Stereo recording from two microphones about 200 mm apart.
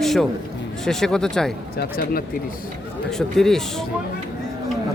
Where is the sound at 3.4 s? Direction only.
Centre (ahead or behind).